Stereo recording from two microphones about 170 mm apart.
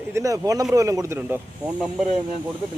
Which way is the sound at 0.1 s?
20° right (ahead or behind).